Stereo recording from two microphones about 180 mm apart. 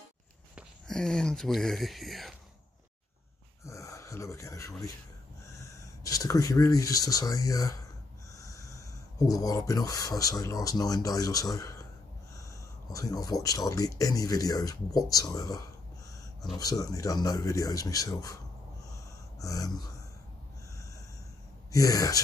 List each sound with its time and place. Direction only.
0.6 s speech: 5° left (ahead or behind)
3.6 s gasp: 15° left (ahead or behind)
5.6 s speech: 20° left (ahead or behind)
8.3 s snort: 20° left (ahead or behind)
9.3 s speech: 20° left (ahead or behind)
19.3 s speech: 20° left (ahead or behind)
21.7 s speech: 20° left (ahead or behind)